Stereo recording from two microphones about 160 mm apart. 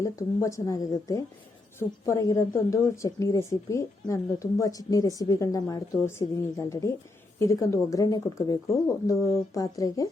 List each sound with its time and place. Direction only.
0.0 s speech: 20° left (ahead or behind)